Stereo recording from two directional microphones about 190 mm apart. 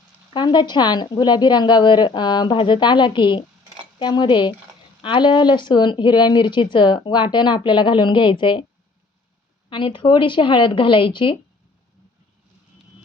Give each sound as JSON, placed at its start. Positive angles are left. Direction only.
{"t": 0.3, "sound": "speech", "side_deg": 25}
{"t": 9.6, "sound": "speech", "side_deg": 25}